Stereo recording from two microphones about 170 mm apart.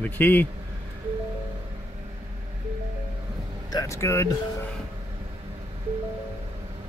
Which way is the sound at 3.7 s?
20° left (ahead or behind).